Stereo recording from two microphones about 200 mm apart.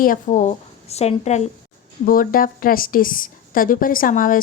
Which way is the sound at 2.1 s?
45° left (ahead or behind).